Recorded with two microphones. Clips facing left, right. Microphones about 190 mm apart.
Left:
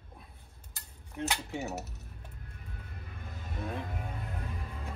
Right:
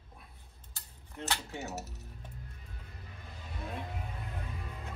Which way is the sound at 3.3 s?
50° left (ahead or behind).